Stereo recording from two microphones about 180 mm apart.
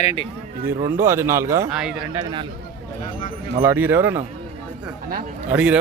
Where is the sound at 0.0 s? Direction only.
35° left (ahead or behind).